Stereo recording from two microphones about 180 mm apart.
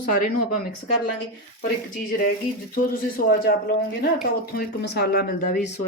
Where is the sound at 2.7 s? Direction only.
55° left (ahead or behind).